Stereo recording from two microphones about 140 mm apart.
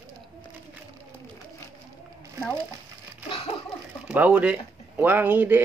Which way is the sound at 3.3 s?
45° left (ahead or behind).